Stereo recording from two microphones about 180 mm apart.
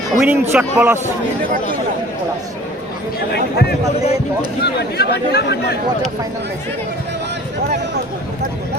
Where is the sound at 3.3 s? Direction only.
65° left (ahead or behind).